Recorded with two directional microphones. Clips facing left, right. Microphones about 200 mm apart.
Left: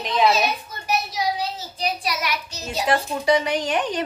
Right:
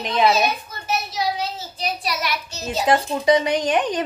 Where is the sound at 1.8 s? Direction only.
15° left (ahead or behind).